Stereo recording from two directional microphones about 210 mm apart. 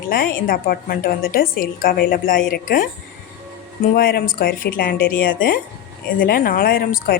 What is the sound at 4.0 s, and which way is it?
A woman's voice, 50° left (ahead or behind).